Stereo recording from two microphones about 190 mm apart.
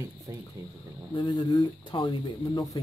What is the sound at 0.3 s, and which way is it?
Speech, 20° right (ahead or behind).